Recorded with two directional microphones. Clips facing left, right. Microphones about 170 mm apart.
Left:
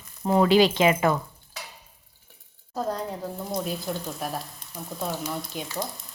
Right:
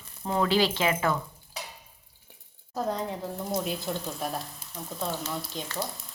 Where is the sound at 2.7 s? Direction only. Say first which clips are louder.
Left 1 dB; centre (ahead or behind).